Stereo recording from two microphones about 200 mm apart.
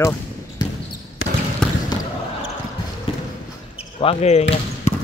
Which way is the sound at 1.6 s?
5° left (ahead or behind).